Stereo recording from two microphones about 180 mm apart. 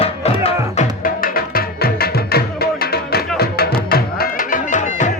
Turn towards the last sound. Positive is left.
turn(degrees=45)  # may be behind; listen again after turning